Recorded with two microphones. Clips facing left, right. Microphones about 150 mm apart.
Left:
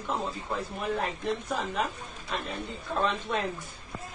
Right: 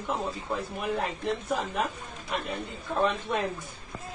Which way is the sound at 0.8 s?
15° right (ahead or behind).